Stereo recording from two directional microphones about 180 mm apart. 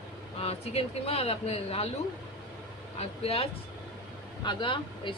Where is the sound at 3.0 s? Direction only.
30° left (ahead or behind).